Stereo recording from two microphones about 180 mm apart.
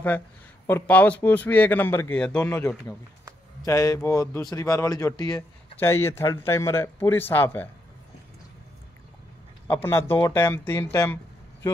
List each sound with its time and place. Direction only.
0.7 s a man's voice: 10° left (ahead or behind)
3.6 s a man's voice: 20° left (ahead or behind)
9.7 s a man's voice: 10° left (ahead or behind)